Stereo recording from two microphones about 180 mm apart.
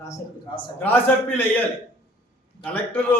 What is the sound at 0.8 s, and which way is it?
A man's voice, 10° left (ahead or behind).